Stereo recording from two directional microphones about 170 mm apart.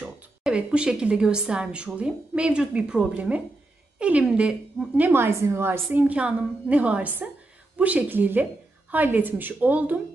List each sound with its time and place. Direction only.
0.0 s a woman's voice: 5° right (ahead or behind)